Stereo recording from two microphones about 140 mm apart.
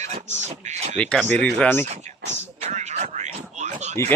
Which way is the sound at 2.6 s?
55° right (ahead or behind).